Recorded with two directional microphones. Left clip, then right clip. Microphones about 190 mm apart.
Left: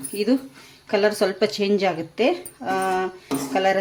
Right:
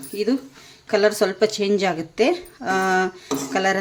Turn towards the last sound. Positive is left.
turn(degrees=-10)  # may be behind; listen again after turning